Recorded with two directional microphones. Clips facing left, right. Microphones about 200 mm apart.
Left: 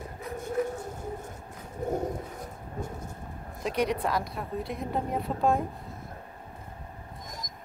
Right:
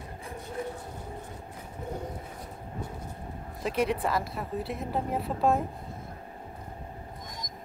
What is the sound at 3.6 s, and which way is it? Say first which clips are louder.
A woman's voice: even; centre (ahead or behind).